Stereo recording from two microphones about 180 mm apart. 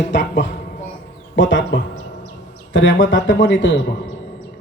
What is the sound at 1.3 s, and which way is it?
A man's voice, 90° left.